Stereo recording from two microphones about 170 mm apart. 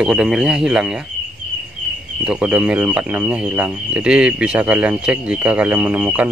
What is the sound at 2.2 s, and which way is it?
Speech, 5° right (ahead or behind).